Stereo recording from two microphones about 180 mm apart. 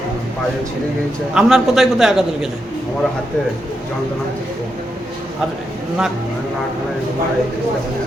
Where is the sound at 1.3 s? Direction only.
Centre (ahead or behind).